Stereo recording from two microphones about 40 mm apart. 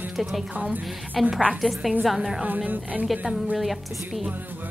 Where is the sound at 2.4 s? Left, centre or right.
Right.